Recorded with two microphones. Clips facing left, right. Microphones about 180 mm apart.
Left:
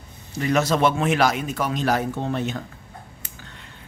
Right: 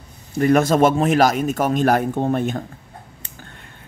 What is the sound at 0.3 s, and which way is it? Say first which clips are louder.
A man's voice: right 6 dB; 50° right (ahead or behind).